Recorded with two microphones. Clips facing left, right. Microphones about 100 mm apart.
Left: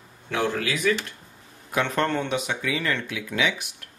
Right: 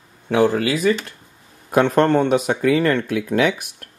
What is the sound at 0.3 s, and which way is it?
Speech, 45° right (ahead or behind).